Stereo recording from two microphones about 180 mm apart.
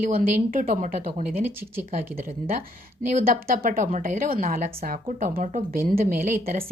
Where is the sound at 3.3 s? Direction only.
55° right (ahead or behind).